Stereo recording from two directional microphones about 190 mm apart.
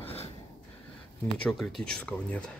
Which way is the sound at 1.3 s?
5° left (ahead or behind).